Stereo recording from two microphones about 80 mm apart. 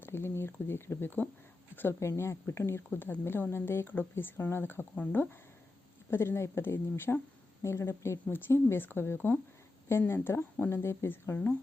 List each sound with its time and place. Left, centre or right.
0.0 s speech: left
2.0 s speech: left